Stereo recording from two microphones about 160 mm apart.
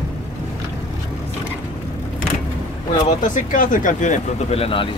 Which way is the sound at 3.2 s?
55° left (ahead or behind).